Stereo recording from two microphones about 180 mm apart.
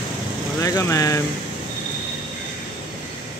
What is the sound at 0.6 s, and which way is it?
Vehicle, 15° left (ahead or behind).